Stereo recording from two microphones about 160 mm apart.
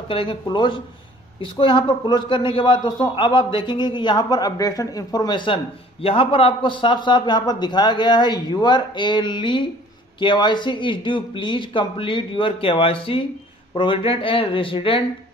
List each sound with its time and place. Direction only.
0.1 s a man's voice: 35° left (ahead or behind)